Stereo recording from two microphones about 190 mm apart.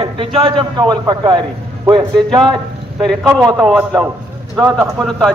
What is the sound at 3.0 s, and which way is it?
A man's voice, centre (ahead or behind).